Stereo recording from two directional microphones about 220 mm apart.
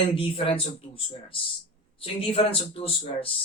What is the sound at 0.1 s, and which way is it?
A man's voice, 25° left (ahead or behind).